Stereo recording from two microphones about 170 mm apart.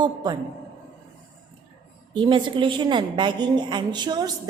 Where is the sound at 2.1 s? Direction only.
30° right (ahead or behind).